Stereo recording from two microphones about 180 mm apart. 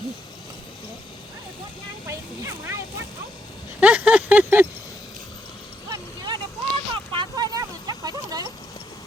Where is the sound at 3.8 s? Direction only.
5° right (ahead or behind).